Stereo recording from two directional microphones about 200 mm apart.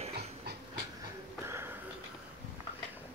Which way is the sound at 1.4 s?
10° right (ahead or behind).